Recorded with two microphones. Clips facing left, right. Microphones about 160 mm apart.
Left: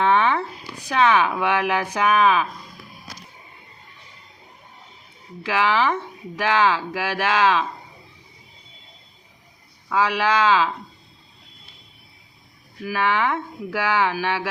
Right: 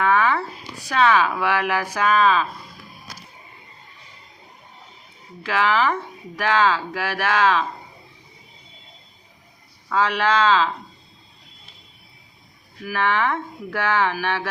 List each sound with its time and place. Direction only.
0.0 s a sound: 25° left (ahead or behind)
0.9 s speech: 15° left (ahead or behind)
5.5 s speech: 15° left (ahead or behind)
9.9 s speech: 10° left (ahead or behind)
12.8 s speech: 15° left (ahead or behind)